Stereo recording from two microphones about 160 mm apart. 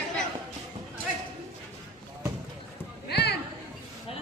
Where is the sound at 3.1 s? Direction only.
90° left.